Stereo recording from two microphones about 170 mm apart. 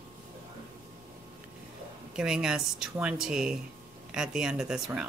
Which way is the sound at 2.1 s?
5° right (ahead or behind).